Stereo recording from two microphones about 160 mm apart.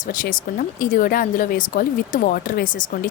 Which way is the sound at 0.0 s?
55° left (ahead or behind).